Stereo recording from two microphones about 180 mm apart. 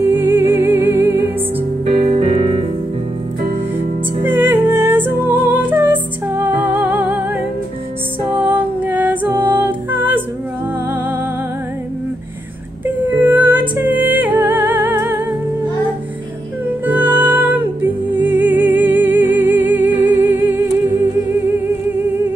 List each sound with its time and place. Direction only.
0.1 s music: 10° right (ahead or behind)
2.1 s piano: 40° right (ahead or behind)
4.2 s music: 10° right (ahead or behind)
8.5 s music: 10° right (ahead or behind)
12.8 s music: 10° right (ahead or behind)
16.8 s music: 10° right (ahead or behind)